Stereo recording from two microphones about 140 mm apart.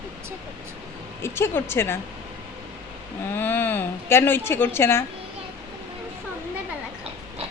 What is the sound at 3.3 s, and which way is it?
Speech, 15° left (ahead or behind).